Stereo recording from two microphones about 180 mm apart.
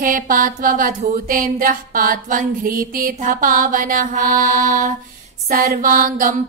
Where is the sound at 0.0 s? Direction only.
45° right (ahead or behind).